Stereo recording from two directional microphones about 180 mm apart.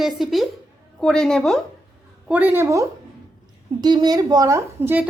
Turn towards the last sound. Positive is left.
turn(degrees=-10)  # may be behind; listen again after turning